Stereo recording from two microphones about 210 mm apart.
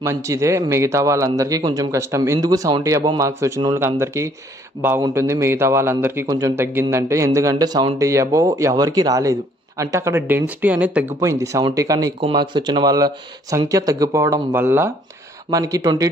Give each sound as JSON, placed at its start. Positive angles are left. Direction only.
{"t": 0.0, "sound": "a man's voice", "side_deg": -15}